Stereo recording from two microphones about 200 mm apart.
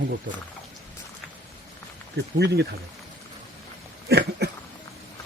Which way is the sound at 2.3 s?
55° right (ahead or behind).